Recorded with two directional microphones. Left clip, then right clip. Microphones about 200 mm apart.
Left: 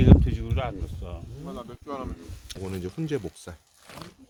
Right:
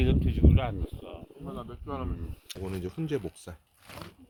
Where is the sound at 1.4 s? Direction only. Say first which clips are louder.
Left 2 dB; 60° left (ahead or behind).